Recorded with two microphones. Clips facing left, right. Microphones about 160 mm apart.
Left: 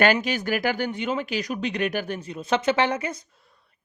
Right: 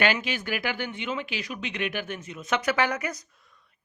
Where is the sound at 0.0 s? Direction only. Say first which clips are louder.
Left 5 dB; 45° left (ahead or behind).